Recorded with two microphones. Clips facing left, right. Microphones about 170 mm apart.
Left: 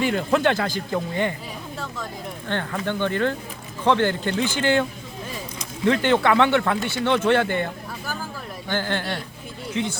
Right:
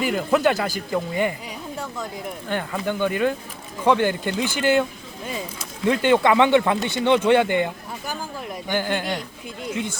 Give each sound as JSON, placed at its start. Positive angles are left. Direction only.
{"t": 0.0, "sound": "speech", "side_deg": -5}
{"t": 2.5, "sound": "speech", "side_deg": -10}